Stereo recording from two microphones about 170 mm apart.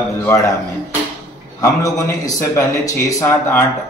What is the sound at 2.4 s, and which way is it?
A man's voice, 15° left (ahead or behind).